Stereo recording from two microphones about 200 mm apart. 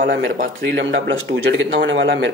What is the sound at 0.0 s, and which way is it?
Speech, 45° right (ahead or behind).